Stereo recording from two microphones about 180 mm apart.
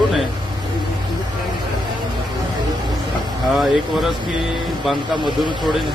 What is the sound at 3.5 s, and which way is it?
Speech, centre (ahead or behind).